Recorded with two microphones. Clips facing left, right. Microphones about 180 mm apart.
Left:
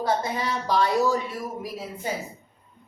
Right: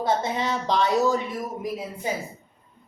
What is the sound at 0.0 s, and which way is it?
Speech, 25° right (ahead or behind).